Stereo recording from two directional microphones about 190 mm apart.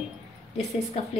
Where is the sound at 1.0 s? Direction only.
35° left (ahead or behind).